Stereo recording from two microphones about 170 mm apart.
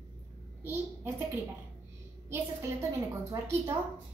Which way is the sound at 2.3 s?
15° right (ahead or behind).